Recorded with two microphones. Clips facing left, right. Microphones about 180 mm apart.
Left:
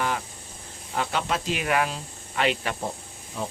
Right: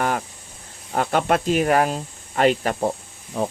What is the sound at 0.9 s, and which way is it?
Speech, 50° right (ahead or behind).